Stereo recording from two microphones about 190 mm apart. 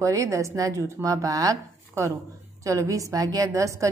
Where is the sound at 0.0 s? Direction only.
15° right (ahead or behind).